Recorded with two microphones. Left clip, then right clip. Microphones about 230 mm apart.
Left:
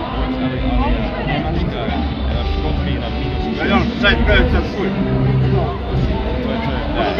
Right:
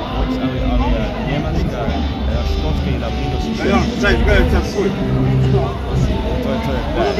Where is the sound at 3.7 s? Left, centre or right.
Left.